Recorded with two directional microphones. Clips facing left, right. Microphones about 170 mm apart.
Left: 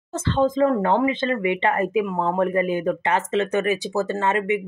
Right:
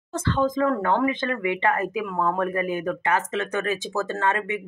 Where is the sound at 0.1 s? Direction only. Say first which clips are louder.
Left 3 dB; 25° left (ahead or behind).